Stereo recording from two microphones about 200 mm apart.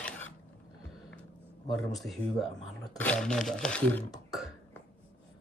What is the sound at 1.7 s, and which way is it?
Speech, centre (ahead or behind).